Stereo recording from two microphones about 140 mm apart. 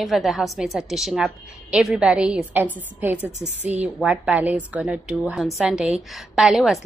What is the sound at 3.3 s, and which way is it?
Speech, 55° right (ahead or behind).